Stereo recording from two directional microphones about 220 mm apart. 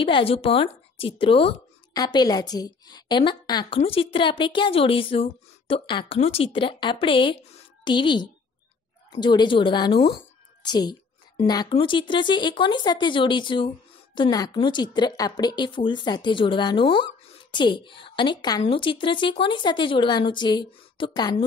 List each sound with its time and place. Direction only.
0.0 s a woman's voice: 25° left (ahead or behind)